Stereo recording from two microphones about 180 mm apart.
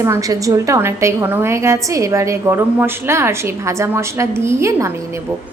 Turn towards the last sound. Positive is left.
turn(degrees=-15)  # may be behind; listen again after turning